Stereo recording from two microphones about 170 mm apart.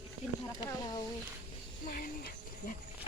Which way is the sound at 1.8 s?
60° left (ahead or behind).